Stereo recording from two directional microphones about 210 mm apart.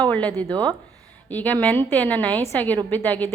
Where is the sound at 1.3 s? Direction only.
10° left (ahead or behind).